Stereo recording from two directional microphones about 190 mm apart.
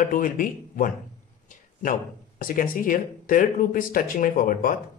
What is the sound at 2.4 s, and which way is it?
Speech, 45° left (ahead or behind).